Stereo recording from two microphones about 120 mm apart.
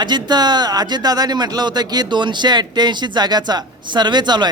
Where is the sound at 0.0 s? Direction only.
35° right (ahead or behind).